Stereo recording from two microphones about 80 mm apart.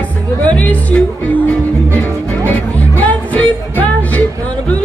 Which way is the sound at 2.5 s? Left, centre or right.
Centre.